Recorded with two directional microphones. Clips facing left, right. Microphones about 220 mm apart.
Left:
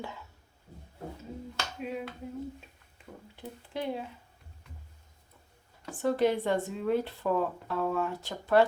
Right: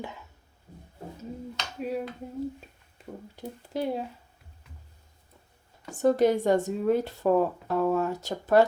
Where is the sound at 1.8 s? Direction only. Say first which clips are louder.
Right 6 dB; 40° right (ahead or behind).